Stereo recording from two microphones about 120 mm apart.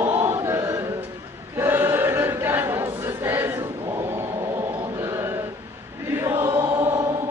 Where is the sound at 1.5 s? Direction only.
20° right (ahead or behind).